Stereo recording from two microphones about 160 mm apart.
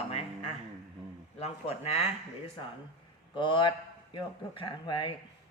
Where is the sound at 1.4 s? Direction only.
40° left (ahead or behind).